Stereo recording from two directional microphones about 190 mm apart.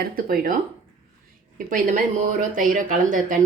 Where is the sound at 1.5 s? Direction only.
45° right (ahead or behind).